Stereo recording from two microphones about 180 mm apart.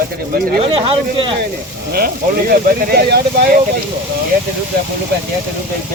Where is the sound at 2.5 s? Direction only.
65° right (ahead or behind).